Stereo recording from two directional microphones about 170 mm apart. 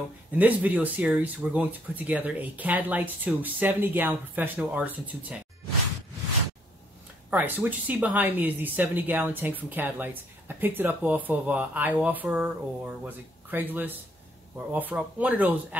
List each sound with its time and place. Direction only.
0.4 s speech: 10° right (ahead or behind)
7.2 s speech: 10° right (ahead or behind)